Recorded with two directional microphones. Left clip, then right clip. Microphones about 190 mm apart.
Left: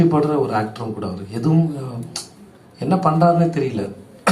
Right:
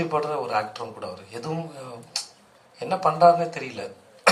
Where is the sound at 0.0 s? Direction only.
30° right (ahead or behind).